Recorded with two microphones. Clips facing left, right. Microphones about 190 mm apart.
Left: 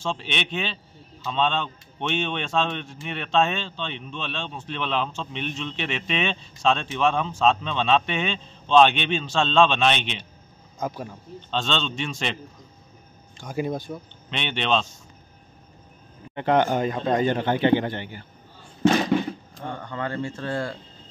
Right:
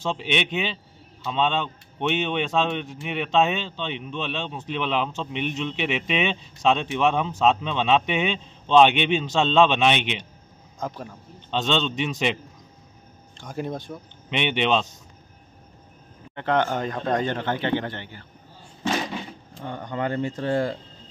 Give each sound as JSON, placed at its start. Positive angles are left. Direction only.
{"t": 0.0, "sound": "speech", "side_deg": -15}
{"t": 10.8, "sound": "speech", "side_deg": 5}
{"t": 11.5, "sound": "speech", "side_deg": -15}
{"t": 13.4, "sound": "speech", "side_deg": 5}
{"t": 14.3, "sound": "speech", "side_deg": -15}
{"t": 16.3, "sound": "speech", "side_deg": 15}
{"t": 19.8, "sound": "speech", "side_deg": -15}